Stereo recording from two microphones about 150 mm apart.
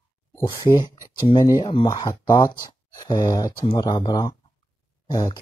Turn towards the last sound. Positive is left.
turn(degrees=25)  # may be behind; listen again after turning